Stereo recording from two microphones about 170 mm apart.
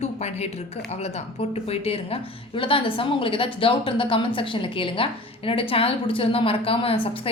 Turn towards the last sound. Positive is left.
turn(degrees=35)  # may be behind; listen again after turning